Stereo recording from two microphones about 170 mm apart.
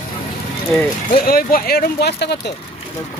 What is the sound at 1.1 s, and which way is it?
Speech, 60° left (ahead or behind).